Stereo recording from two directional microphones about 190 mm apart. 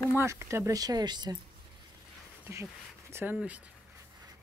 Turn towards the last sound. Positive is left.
turn(degrees=-5)  # may be behind; listen again after turning